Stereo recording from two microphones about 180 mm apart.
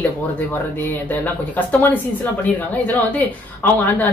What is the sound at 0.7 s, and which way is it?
Speech, 10° left (ahead or behind).